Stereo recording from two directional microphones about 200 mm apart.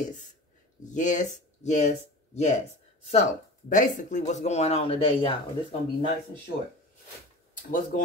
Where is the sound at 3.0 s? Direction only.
35° left (ahead or behind).